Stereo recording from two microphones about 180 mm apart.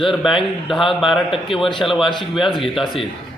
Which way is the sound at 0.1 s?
Centre (ahead or behind).